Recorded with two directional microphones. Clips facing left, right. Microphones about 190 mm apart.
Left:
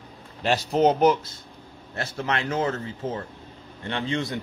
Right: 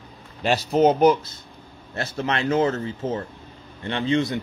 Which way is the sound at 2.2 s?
25° right (ahead or behind).